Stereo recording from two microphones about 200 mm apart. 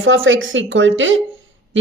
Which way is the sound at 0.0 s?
75° right (ahead or behind).